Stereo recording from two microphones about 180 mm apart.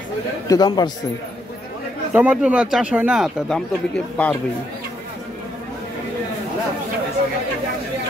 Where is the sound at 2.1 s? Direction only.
10° right (ahead or behind).